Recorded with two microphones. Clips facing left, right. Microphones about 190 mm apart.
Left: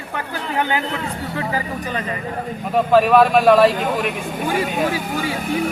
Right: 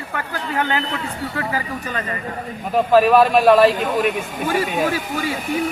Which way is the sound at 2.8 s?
Centre (ahead or behind).